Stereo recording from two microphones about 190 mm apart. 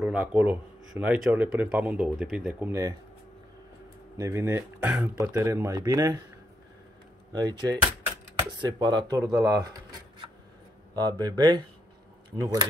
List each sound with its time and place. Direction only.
0.0 s speech: 10° right (ahead or behind)
4.2 s speech: 15° right (ahead or behind)
7.3 s speech: 20° right (ahead or behind)
11.0 s speech: 20° right (ahead or behind)